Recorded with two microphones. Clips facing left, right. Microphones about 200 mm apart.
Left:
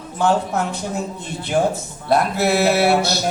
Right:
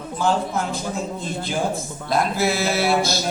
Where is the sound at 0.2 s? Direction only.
70° left (ahead or behind).